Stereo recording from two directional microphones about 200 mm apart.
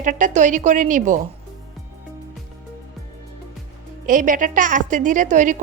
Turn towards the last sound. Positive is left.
turn(degrees=-40)  # may be behind; listen again after turning